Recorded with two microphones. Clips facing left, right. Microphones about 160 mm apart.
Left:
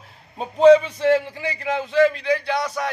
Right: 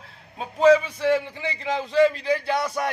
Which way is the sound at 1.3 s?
25° right (ahead or behind).